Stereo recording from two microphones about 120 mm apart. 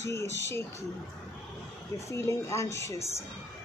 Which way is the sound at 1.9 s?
25° left (ahead or behind).